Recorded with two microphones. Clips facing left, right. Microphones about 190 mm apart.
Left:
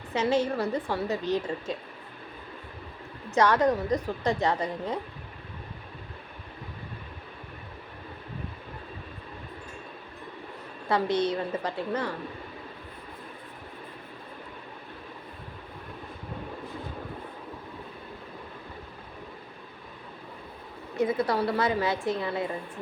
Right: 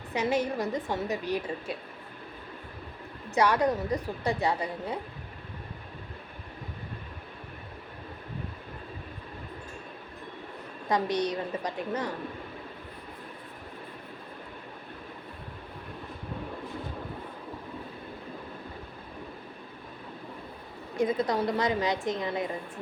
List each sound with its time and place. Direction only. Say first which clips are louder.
0.1 s a woman's voice: left 2 dB; 15° right (ahead or behind)
3.3 s a woman's voice: left 2 dB; 15° right (ahead or behind)
10.8 s a woman's voice: left 2 dB; 15° right (ahead or behind)
20.9 s a woman's voice: left 1 dB; 15° right (ahead or behind)